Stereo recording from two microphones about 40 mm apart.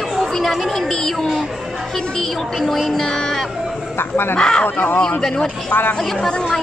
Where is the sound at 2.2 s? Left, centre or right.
Centre.